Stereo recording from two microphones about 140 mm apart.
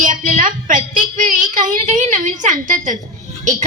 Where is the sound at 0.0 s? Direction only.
70° right (ahead or behind).